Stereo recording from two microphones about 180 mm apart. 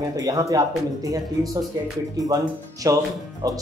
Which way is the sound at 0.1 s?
20° right (ahead or behind).